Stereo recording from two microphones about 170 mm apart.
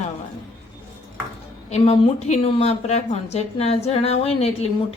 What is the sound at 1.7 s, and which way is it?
A woman's voice, 35° left (ahead or behind).